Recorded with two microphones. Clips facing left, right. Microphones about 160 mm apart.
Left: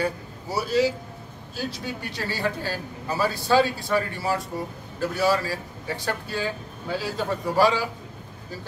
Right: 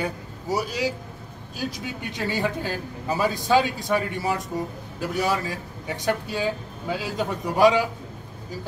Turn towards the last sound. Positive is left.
turn(degrees=-15)  # may be behind; listen again after turning